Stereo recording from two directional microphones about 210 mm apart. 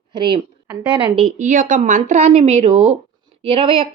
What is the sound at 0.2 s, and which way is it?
A woman's voice, 25° right (ahead or behind).